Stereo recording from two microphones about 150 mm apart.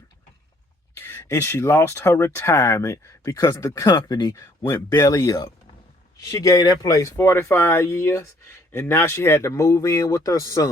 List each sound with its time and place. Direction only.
0.9 s speech: 15° left (ahead or behind)